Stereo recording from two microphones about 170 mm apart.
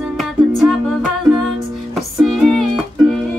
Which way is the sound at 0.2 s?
Centre (ahead or behind).